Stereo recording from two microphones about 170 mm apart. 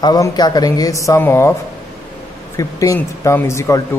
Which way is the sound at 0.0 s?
25° left (ahead or behind).